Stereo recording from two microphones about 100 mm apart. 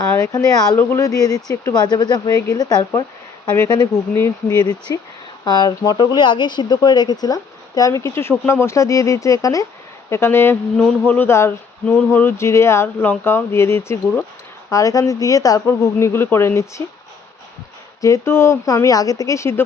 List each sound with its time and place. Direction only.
0.1 s speech: 25° left (ahead or behind)
4.1 s speech: 25° left (ahead or behind)
4.6 s speech: 45° left (ahead or behind); by 16.8 s 25° left (ahead or behind)
18.0 s speech: 30° left (ahead or behind)